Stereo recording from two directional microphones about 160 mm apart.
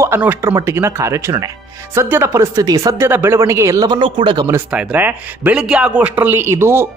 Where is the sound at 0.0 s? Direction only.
15° right (ahead or behind); by 4.5 s 30° right (ahead or behind).